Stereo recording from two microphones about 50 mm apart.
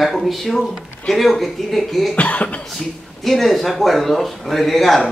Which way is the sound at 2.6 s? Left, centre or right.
Centre.